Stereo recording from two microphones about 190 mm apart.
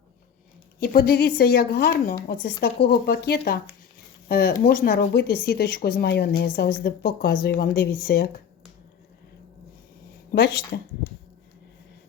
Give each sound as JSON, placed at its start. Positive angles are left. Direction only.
{"t": 0.8, "sound": "speech", "side_deg": 55}